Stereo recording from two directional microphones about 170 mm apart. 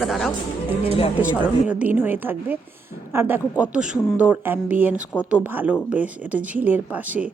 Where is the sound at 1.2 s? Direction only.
10° right (ahead or behind).